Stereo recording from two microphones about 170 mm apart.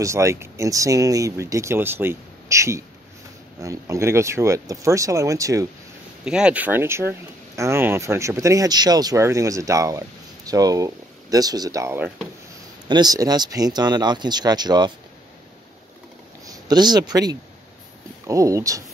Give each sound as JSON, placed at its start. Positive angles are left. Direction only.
{"t": 0.0, "sound": "speech", "side_deg": -15}
{"t": 6.2, "sound": "speech", "side_deg": -5}
{"t": 16.4, "sound": "a sound", "side_deg": -25}
{"t": 17.1, "sound": "speech", "side_deg": -20}